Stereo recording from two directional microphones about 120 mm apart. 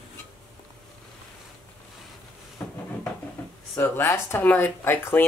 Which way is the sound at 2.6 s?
15° left (ahead or behind).